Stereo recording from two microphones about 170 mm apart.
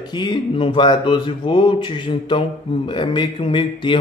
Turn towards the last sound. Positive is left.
turn(degrees=30)  # may be behind; listen again after turning